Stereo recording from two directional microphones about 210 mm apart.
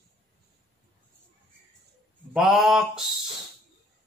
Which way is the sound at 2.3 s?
Centre (ahead or behind).